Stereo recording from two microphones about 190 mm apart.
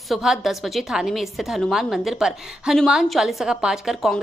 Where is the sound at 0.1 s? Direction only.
Centre (ahead or behind).